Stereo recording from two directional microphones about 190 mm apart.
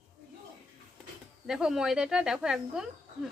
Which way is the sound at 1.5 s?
5° right (ahead or behind).